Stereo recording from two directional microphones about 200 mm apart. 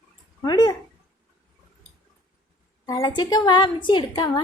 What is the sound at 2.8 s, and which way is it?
A woman's voice, 20° left (ahead or behind).